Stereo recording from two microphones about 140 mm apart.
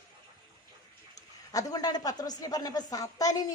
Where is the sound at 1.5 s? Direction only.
25° left (ahead or behind).